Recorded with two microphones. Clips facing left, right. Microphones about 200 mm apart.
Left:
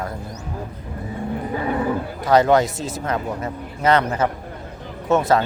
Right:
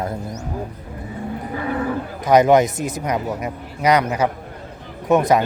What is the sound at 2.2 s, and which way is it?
A man's voice, 20° right (ahead or behind).